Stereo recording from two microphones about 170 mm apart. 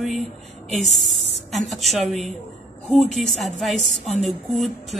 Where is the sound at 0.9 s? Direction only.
Centre (ahead or behind).